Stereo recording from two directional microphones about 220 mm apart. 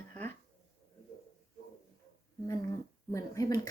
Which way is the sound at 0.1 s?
10° left (ahead or behind).